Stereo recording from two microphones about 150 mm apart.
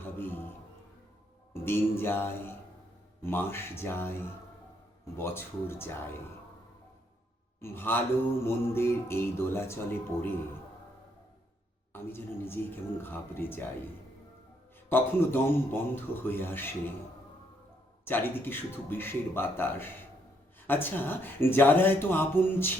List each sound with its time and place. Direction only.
0.0 s a sound: 15° left (ahead or behind)
1.5 s speech: 15° left (ahead or behind)
5.1 s speech: 15° left (ahead or behind)
7.6 s speech: 15° left (ahead or behind)
12.0 s speech: 15° left (ahead or behind)
14.8 s speech: 15° left (ahead or behind)
18.0 s speech: 15° left (ahead or behind)